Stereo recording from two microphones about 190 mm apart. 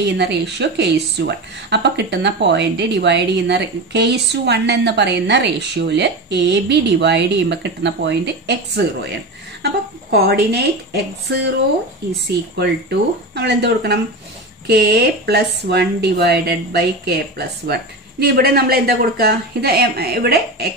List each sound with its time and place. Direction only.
0.0 s speech: 65° right (ahead or behind)
13.3 s speech: 60° right (ahead or behind)